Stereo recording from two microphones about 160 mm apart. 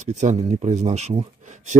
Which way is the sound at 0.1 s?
45° right (ahead or behind).